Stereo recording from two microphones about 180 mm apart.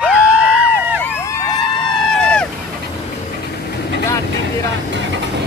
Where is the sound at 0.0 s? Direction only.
5° right (ahead or behind).